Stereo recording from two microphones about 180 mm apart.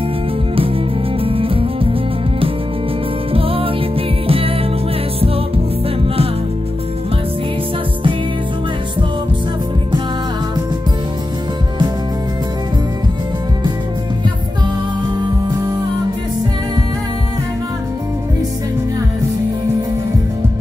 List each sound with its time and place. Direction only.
1.2 s music: 30° right (ahead or behind)
3.3 s music: 30° right (ahead or behind)